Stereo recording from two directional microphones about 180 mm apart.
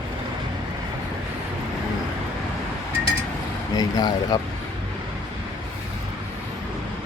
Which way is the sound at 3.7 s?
20° left (ahead or behind).